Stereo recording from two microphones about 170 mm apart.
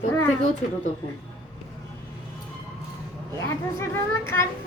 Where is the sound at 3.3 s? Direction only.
15° left (ahead or behind).